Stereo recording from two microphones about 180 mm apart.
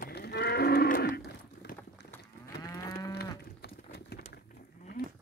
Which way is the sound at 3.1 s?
60° left (ahead or behind).